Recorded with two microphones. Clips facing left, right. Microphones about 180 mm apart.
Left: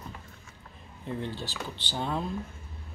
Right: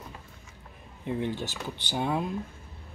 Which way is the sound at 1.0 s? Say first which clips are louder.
Right 4 dB; 15° right (ahead or behind).